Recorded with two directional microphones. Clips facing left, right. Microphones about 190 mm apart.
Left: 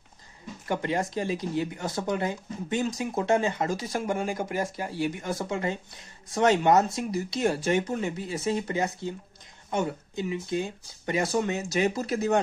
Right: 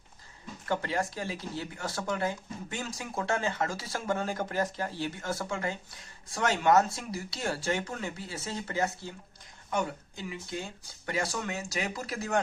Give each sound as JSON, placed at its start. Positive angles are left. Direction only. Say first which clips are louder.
{"t": 0.7, "sound": "speech", "louder": "left 3 dB", "side_deg": 20}